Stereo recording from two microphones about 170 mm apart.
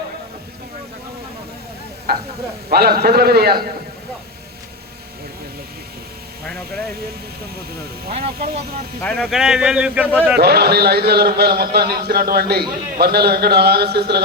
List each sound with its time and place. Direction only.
2.1 s a man's voice: 65° right (ahead or behind)
8.1 s speech: 40° right (ahead or behind)
9.0 s speech: 5° left (ahead or behind)
10.3 s a man's voice: 70° right (ahead or behind)